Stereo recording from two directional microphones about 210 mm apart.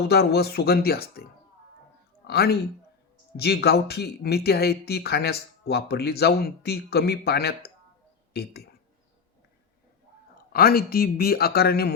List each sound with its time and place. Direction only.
0.1 s a man's voice: 50° left (ahead or behind)
10.5 s speech: 45° left (ahead or behind)